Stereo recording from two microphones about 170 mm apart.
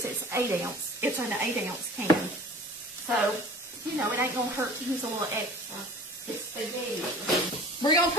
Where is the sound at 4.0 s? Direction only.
15° right (ahead or behind).